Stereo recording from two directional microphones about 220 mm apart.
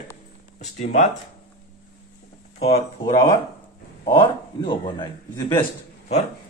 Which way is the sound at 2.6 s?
25° left (ahead or behind).